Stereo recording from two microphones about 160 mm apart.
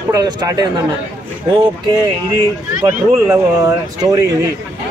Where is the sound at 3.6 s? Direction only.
25° right (ahead or behind).